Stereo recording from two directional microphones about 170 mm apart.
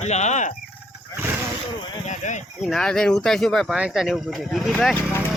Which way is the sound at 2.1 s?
45° left (ahead or behind).